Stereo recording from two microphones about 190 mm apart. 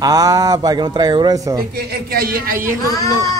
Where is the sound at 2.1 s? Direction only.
50° right (ahead or behind).